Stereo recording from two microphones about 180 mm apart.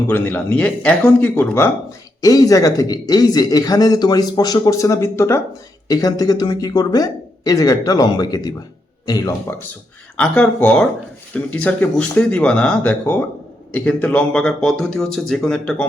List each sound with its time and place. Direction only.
0.1 s speech: 10° left (ahead or behind)